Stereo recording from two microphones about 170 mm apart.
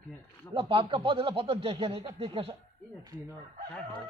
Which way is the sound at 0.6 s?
30° right (ahead or behind).